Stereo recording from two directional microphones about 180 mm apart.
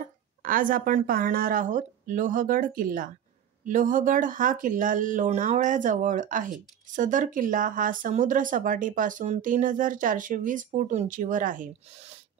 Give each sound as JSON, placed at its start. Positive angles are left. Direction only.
{"t": 0.4, "sound": "speech", "side_deg": -50}